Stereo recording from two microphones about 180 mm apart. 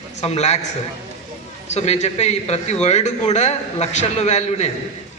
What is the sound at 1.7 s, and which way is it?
A man's voice, 35° left (ahead or behind).